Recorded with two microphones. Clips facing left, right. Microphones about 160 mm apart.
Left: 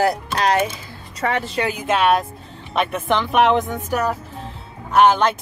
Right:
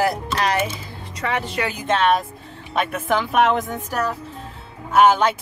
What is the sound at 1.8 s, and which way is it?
Speech, 10° left (ahead or behind).